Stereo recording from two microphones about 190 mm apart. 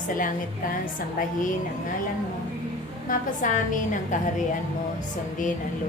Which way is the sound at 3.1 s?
45° left (ahead or behind).